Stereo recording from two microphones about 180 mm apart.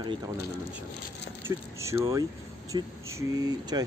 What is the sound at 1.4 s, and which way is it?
Speech, 15° right (ahead or behind).